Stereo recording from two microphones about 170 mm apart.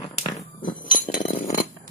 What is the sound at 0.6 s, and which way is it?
Chink, 50° left (ahead or behind).